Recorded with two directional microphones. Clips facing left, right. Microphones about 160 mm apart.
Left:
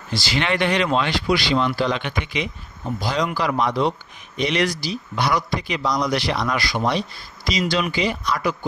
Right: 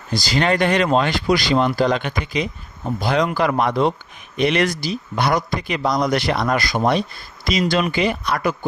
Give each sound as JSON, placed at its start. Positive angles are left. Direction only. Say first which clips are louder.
{"t": 0.1, "sound": "speech", "louder": "right 4 dB", "side_deg": -40}
{"t": 3.0, "sound": "speech", "louder": "right 4 dB", "side_deg": -55}